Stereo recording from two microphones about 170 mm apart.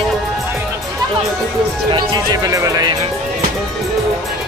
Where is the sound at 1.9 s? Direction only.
25° right (ahead or behind).